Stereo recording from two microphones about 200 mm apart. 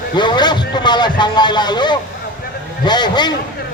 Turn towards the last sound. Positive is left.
turn(degrees=20)  # may be behind; listen again after turning